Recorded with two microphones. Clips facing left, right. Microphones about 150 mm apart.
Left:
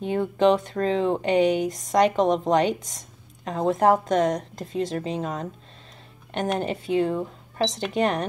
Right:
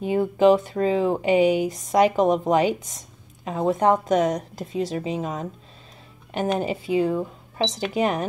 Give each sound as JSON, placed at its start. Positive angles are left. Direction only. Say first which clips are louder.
{"t": 0.0, "sound": "speech", "louder": "right 2 dB", "side_deg": -5}